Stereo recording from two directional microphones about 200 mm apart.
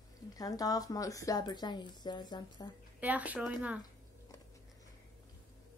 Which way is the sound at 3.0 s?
5° right (ahead or behind).